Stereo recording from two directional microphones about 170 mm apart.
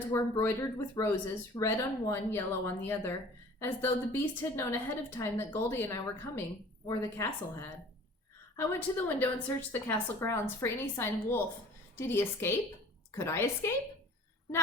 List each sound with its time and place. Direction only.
0.1 s a woman's voice: 15° left (ahead or behind)